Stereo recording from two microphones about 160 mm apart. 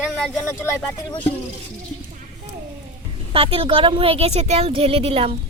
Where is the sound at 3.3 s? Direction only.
35° right (ahead or behind).